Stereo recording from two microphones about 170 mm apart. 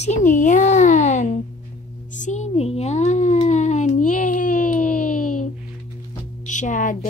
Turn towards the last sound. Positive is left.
turn(degrees=50)  # may be behind; listen again after turning